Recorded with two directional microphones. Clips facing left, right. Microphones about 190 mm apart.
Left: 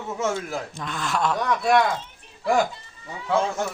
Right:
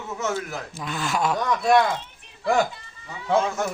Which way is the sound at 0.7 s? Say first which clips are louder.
Right 3 dB; 5° right (ahead or behind).